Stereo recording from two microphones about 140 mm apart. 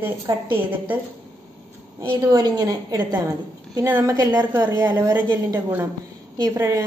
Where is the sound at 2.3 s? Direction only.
30° right (ahead or behind).